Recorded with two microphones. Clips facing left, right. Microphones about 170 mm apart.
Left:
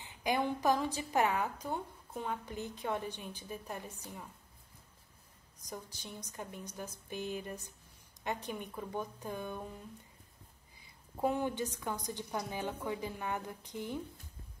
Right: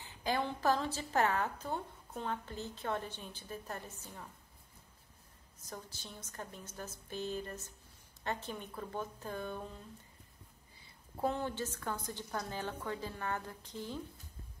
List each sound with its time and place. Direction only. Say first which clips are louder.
0.0 s a woman's voice: left 2 dB; 15° left (ahead or behind)
5.6 s a woman's voice: left 2 dB; 15° left (ahead or behind)
11.1 s a woman's voice: left 3 dB; 10° left (ahead or behind)